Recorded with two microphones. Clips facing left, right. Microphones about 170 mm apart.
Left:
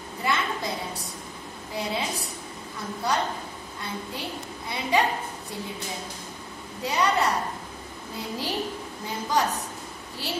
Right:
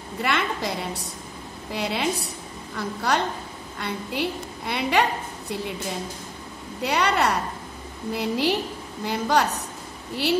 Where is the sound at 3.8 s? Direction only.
70° right (ahead or behind).